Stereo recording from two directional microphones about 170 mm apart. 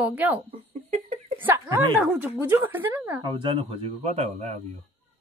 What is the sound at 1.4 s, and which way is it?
A woman's voice, 10° right (ahead or behind).